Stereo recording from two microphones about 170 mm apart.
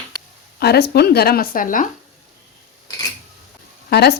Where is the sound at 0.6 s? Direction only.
70° left (ahead or behind); by 1.8 s 50° left (ahead or behind).